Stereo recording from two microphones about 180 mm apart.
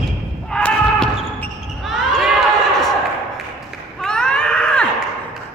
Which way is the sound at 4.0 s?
5° left (ahead or behind).